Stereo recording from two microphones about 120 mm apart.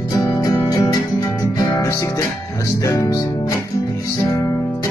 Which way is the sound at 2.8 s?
30° left (ahead or behind).